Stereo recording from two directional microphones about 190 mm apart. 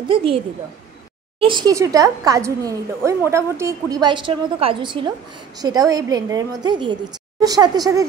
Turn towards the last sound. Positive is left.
turn(degrees=-20)  # may be behind; listen again after turning